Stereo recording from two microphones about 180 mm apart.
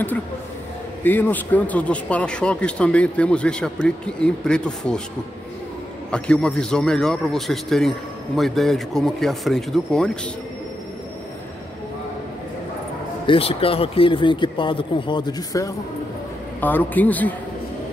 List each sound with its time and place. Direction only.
1.0 s a man's voice: 10° left (ahead or behind)
6.1 s a man's voice: 5° left (ahead or behind)
13.3 s speech: 30° left (ahead or behind)
16.6 s a man's voice: 10° left (ahead or behind)